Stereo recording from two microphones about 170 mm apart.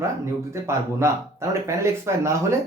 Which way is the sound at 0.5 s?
15° right (ahead or behind).